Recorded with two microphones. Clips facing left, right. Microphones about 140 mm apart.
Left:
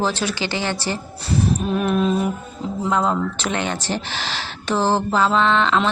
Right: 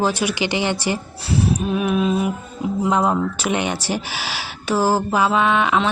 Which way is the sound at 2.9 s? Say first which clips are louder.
Even; 15° right (ahead or behind).